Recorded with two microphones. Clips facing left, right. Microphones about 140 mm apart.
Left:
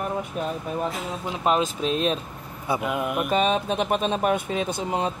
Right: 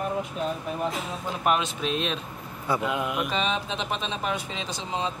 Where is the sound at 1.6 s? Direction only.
40° left (ahead or behind).